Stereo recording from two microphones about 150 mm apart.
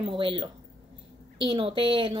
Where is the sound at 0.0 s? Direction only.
35° right (ahead or behind).